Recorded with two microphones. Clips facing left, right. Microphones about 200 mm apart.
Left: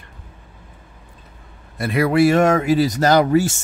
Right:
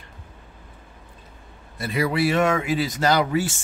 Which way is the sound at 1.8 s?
60° left (ahead or behind).